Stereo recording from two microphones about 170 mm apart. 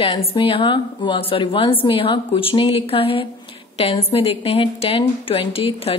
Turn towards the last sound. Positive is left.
turn(degrees=35)  # may be behind; listen again after turning